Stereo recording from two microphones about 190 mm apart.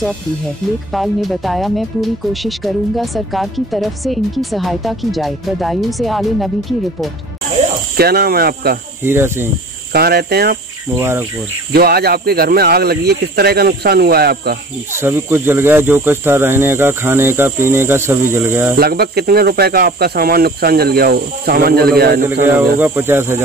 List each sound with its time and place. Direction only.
0.9 s speech: centre (ahead or behind)
7.9 s snake: 55° right (ahead or behind)
9.0 s speech: 10° right (ahead or behind)
9.9 s speech: 55° right (ahead or behind)
11.0 s speech: 10° right (ahead or behind)
11.7 s speech: 55° right (ahead or behind)
15.0 s speech: 10° right (ahead or behind)
18.8 s snake: 55° right (ahead or behind)
22.8 s speech: 10° right (ahead or behind)